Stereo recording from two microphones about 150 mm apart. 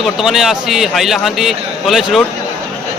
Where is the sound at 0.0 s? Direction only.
Centre (ahead or behind).